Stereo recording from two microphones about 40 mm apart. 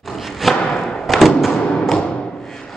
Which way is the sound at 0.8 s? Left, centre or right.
Centre.